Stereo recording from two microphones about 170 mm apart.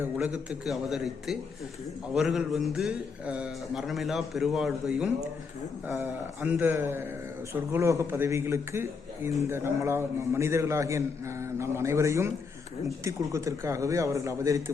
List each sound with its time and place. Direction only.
0.0 s a man's voice: 10° right (ahead or behind)